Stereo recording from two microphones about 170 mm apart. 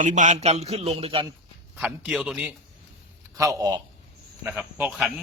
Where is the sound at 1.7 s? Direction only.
5° right (ahead or behind).